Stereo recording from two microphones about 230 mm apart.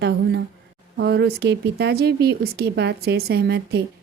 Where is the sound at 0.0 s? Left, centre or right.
Right.